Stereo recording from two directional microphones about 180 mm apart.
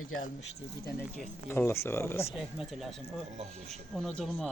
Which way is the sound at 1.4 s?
15° left (ahead or behind).